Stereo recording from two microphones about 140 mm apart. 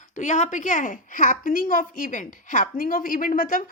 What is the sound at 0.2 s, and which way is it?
A woman's voice, 60° left (ahead or behind).